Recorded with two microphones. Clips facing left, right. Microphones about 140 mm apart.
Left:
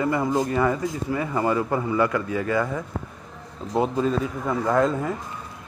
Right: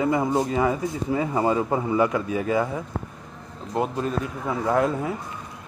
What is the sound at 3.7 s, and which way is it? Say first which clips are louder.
Speech: left 3 dB; centre (ahead or behind).